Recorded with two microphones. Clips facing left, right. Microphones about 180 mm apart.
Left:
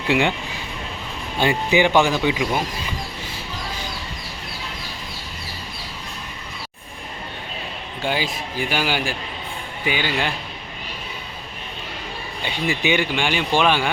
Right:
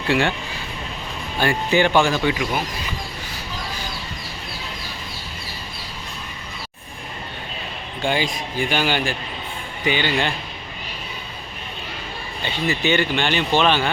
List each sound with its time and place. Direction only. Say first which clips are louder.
0.1 s speech: left 1 dB; 15° left (ahead or behind)
1.4 s speech: left 1 dB; 15° left (ahead or behind)
8.0 s speech: right 2 dB; 5° left (ahead or behind)
12.4 s speech: right 1 dB; 15° left (ahead or behind)